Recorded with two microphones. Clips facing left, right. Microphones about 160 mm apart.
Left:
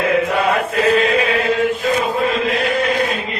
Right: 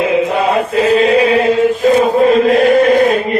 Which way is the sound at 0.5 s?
35° right (ahead or behind).